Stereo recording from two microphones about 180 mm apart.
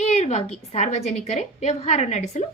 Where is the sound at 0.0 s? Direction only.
40° left (ahead or behind).